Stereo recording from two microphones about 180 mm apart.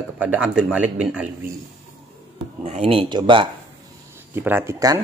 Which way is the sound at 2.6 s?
35° right (ahead or behind).